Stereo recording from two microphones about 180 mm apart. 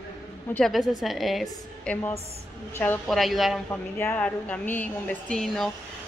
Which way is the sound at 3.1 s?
Centre (ahead or behind).